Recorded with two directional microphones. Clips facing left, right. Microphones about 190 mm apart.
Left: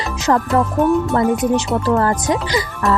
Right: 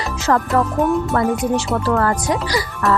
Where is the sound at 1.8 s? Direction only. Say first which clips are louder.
Left 2 dB; 20° left (ahead or behind).